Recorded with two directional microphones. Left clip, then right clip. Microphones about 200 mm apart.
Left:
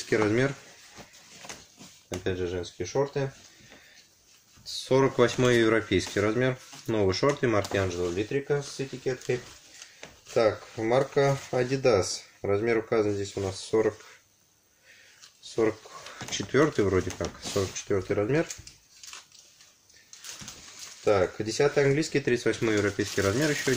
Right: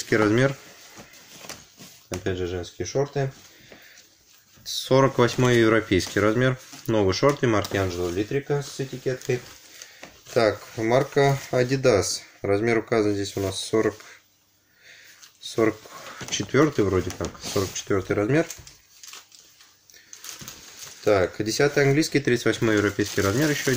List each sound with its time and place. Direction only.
0.1 s speech: 35° right (ahead or behind)
2.2 s speech: 35° right (ahead or behind)
4.6 s speech: 40° right (ahead or behind)
10.3 s speech: 40° right (ahead or behind)
15.4 s a sound: 40° right (ahead or behind)
16.3 s speech: 30° right (ahead or behind)
17.8 s speech: 40° right (ahead or behind)
21.0 s speech: 45° right (ahead or behind); by 23.7 s 25° right (ahead or behind)